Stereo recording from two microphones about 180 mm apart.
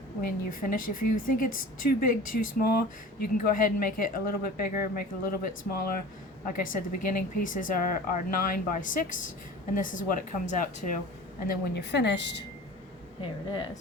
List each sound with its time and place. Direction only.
0.2 s a woman's voice: 55° left (ahead or behind)
11.4 s a woman's voice: 70° left (ahead or behind)
13.2 s speech: 25° left (ahead or behind)